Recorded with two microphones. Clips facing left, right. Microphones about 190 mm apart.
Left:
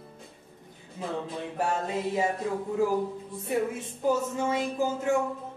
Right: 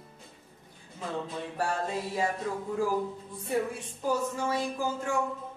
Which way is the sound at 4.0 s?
20° left (ahead or behind).